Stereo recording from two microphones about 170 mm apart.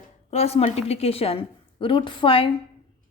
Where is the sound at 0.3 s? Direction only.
40° left (ahead or behind).